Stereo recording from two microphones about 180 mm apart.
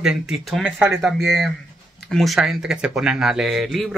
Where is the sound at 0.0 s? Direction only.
5° right (ahead or behind).